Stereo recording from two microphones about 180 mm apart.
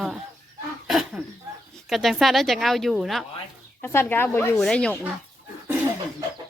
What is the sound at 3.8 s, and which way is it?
Speech, 10° left (ahead or behind).